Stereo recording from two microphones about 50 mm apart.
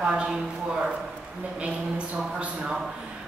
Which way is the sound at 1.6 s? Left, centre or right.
Right.